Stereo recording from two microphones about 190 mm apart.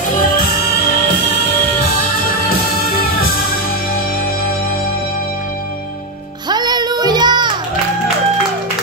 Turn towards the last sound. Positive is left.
turn(degrees=-25)  # may be behind; listen again after turning